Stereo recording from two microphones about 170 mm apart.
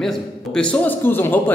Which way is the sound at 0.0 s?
5° left (ahead or behind).